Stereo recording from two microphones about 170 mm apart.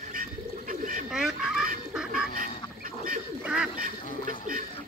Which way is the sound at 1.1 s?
Centre (ahead or behind).